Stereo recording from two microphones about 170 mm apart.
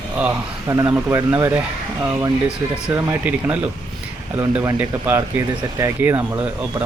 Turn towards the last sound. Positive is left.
turn(degrees=-10)  # may be behind; listen again after turning